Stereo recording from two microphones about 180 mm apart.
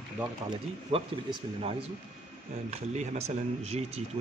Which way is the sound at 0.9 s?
30° right (ahead or behind).